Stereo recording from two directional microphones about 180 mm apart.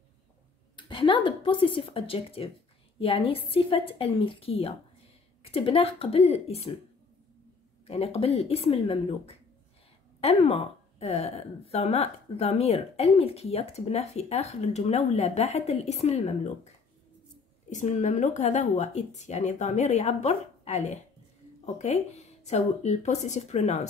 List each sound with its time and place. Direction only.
0.7 s a woman's voice: 25° left (ahead or behind)
7.8 s a woman's voice: 35° left (ahead or behind)
17.6 s a woman's voice: 40° left (ahead or behind)